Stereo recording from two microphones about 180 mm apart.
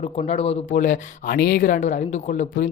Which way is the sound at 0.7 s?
45° left (ahead or behind).